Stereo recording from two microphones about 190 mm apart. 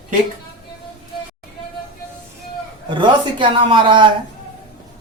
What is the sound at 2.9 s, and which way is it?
Speech, 25° right (ahead or behind).